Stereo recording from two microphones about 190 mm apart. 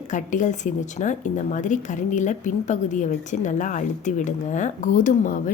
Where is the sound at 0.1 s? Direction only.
40° left (ahead or behind).